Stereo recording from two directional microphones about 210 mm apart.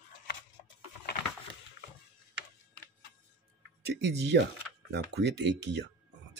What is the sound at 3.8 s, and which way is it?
Speech, 55° right (ahead or behind).